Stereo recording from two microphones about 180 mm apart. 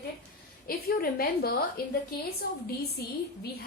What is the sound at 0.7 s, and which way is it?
Speech, 55° left (ahead or behind).